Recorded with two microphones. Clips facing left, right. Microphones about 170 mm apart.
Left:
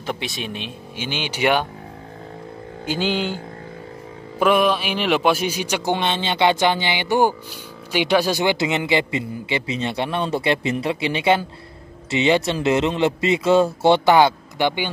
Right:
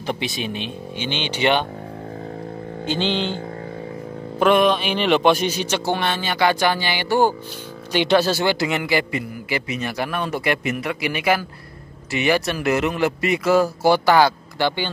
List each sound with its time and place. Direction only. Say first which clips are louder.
0.0 s speech: right 2 dB; centre (ahead or behind)
2.9 s a man's voice: even; 10° left (ahead or behind)
4.4 s a man's voice: right 1 dB; 10° left (ahead or behind)